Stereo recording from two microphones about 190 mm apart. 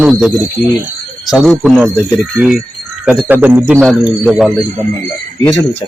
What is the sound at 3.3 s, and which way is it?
Speech, 10° right (ahead or behind).